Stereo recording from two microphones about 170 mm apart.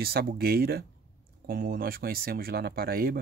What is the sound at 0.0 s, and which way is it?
Speech, 65° right (ahead or behind).